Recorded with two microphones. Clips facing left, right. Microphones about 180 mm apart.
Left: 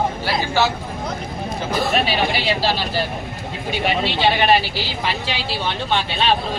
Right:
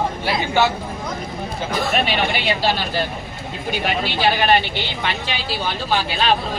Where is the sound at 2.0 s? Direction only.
35° left (ahead or behind).